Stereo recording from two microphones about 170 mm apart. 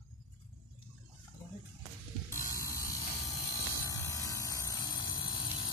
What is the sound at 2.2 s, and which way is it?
Mechanisms, 15° left (ahead or behind).